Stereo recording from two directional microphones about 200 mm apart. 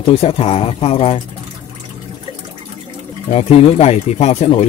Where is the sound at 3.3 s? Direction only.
30° left (ahead or behind).